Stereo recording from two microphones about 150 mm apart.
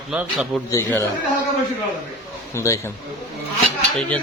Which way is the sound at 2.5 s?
20° left (ahead or behind).